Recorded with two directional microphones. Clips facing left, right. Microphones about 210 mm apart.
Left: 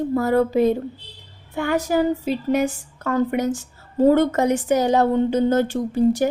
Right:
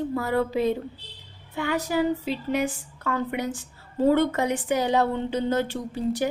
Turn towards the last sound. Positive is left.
turn(degrees=45)  # may be behind; listen again after turning